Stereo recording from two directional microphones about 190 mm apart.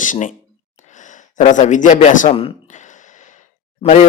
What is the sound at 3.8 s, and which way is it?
Speech, 40° left (ahead or behind).